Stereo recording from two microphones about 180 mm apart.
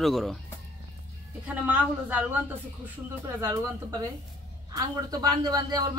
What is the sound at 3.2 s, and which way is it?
A man's voice, 15° right (ahead or behind).